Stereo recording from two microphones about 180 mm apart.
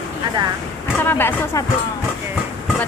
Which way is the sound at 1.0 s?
10° left (ahead or behind).